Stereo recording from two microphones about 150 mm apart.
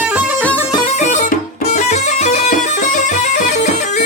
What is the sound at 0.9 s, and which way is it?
Music, 55° left (ahead or behind).